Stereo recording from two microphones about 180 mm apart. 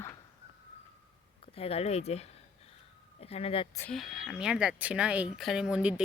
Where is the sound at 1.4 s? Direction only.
30° left (ahead or behind).